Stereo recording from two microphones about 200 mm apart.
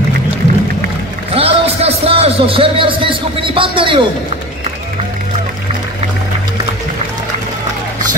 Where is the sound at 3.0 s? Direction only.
25° right (ahead or behind).